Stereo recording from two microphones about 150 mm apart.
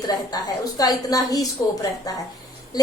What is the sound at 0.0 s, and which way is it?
A woman's voice, 25° left (ahead or behind).